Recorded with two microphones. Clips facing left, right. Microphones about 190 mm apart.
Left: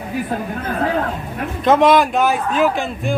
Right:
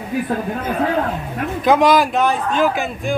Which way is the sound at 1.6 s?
Centre (ahead or behind).